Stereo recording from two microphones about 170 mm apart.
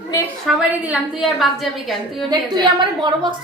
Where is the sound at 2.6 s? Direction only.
25° right (ahead or behind).